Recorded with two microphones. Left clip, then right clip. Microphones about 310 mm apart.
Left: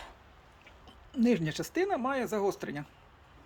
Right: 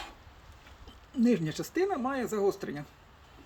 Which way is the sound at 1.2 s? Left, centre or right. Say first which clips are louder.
Even; centre.